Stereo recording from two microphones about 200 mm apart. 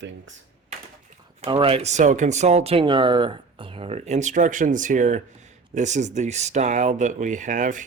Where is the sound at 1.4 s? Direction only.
25° right (ahead or behind).